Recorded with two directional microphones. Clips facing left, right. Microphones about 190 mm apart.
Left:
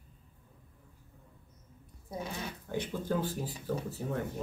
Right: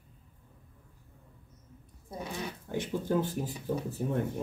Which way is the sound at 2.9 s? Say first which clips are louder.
Right 5 dB; 20° right (ahead or behind).